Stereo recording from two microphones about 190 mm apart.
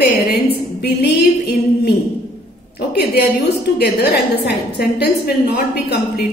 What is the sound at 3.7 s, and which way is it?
A woman's voice, 55° left (ahead or behind).